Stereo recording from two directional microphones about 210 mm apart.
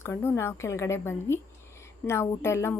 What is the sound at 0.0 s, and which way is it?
A woman's voice, 10° left (ahead or behind).